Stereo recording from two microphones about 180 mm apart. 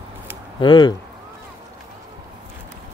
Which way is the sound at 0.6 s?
25° left (ahead or behind).